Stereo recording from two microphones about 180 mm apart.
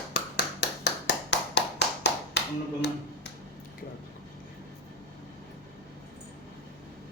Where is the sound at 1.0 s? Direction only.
70° left (ahead or behind).